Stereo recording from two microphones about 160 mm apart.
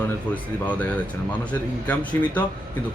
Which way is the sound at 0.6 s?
10° left (ahead or behind).